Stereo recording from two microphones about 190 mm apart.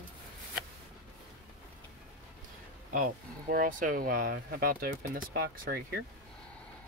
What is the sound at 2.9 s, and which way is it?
Speech, 45° right (ahead or behind).